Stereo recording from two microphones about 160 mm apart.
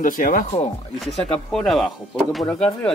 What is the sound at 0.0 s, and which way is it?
Speech, 55° left (ahead or behind).